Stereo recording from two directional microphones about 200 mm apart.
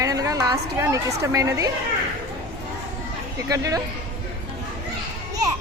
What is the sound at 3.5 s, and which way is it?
Speech, 15° right (ahead or behind).